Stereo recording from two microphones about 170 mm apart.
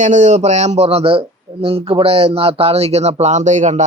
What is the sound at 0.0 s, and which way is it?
Speech, 45° right (ahead or behind).